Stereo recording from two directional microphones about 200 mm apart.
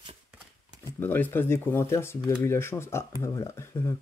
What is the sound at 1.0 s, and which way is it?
Speech, 10° left (ahead or behind).